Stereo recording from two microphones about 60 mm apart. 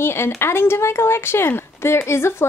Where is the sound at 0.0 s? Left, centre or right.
Left.